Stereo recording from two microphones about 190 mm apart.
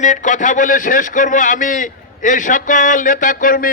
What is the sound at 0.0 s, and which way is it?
A man's voice, 40° left (ahead or behind).